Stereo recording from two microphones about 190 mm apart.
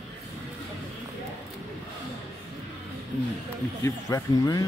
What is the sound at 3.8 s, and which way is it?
Speech, 15° left (ahead or behind).